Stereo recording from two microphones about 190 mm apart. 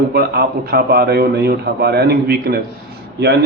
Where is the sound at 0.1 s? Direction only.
55° right (ahead or behind).